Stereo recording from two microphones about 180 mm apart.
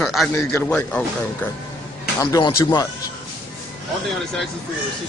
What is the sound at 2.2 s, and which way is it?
Speech, 20° left (ahead or behind).